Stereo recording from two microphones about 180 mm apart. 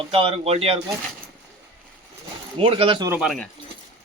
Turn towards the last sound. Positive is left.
turn(degrees=0)  # may be behind; listen again after turning